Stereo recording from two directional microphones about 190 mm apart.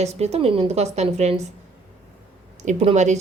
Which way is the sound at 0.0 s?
35° right (ahead or behind).